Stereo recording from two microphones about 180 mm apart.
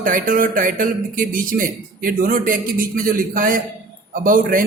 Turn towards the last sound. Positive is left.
turn(degrees=-50)  # may be behind; listen again after turning